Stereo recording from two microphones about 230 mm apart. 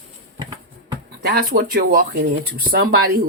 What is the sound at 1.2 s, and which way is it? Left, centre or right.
Speech, right.